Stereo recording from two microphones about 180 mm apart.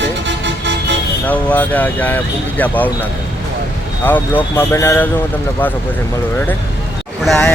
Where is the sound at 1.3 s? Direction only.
10° left (ahead or behind).